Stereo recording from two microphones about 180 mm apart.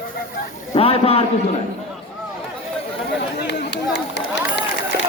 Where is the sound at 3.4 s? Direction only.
70° left (ahead or behind).